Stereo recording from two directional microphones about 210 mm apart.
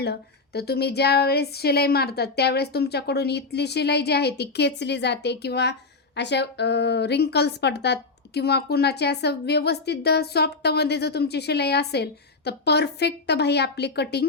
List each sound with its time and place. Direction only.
0.0 s a woman's voice: 50° left (ahead or behind)